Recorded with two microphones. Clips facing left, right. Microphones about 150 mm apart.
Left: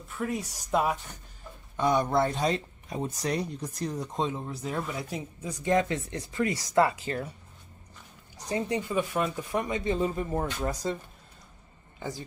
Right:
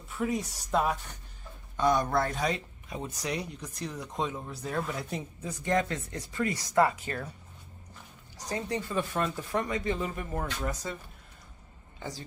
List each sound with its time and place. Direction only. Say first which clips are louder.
0.4 s speech: left 1 dB; 5° left (ahead or behind)
2.0 s speech: left 3 dB; 25° left (ahead or behind)
4.3 s speech: left 2 dB; 20° left (ahead or behind)
4.8 s a woman's voice: left 1 dB; 5° left (ahead or behind)
5.5 s speech: left 3 dB; 20° left (ahead or behind)
8.5 s speech: left 3 dB; 20° left (ahead or behind)
12.0 s speech: left 3 dB; 20° left (ahead or behind)